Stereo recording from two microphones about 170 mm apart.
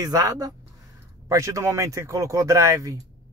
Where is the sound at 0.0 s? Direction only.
20° right (ahead or behind).